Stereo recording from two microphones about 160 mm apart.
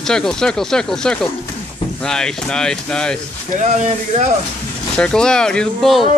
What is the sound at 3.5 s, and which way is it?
Speech, 45° right (ahead or behind).